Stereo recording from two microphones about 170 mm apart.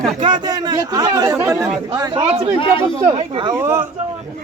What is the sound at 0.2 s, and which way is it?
Speech, 25° right (ahead or behind).